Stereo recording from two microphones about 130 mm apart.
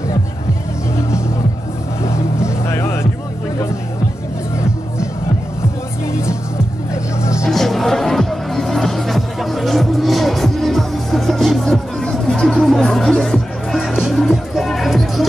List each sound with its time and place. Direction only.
2.4 s music: 20° left (ahead or behind)
7.2 s music: 20° left (ahead or behind)
7.5 s music: centre (ahead or behind)